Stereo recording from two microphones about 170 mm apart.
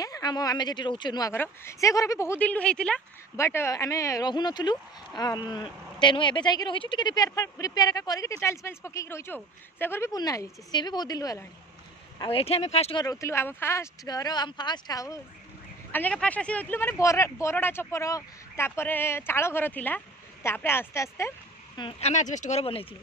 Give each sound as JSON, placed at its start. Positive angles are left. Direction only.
{"t": 0.0, "sound": "speech", "side_deg": 20}
{"t": 1.3, "sound": "speech", "side_deg": 15}
{"t": 12.2, "sound": "speech", "side_deg": 35}
{"t": 13.0, "sound": "speech", "side_deg": 20}
{"t": 15.9, "sound": "speech", "side_deg": 10}
{"t": 21.7, "sound": "speech", "side_deg": 30}
{"t": 22.1, "sound": "speech", "side_deg": 45}